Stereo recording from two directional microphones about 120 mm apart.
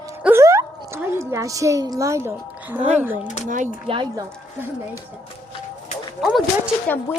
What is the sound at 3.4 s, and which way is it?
Speech, 90° right.